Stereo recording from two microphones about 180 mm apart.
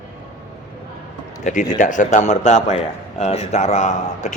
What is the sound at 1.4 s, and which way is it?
A man's voice, 45° left (ahead or behind).